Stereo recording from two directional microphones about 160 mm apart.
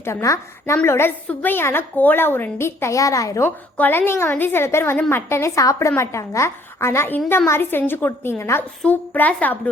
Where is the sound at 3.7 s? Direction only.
10° left (ahead or behind).